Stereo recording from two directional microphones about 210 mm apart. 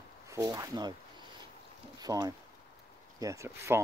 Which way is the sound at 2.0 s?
20° right (ahead or behind).